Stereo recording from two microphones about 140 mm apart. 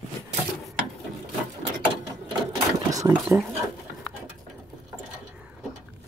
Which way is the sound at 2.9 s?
20° right (ahead or behind).